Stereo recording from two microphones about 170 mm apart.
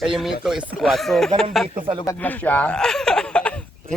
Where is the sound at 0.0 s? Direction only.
Centre (ahead or behind).